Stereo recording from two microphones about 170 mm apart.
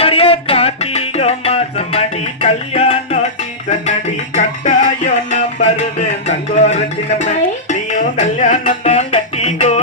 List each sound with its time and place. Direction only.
0.0 s music: 35° left (ahead or behind)
4.4 s music: 50° left (ahead or behind)